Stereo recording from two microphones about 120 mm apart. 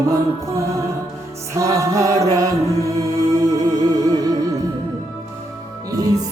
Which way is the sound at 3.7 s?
30° right (ahead or behind).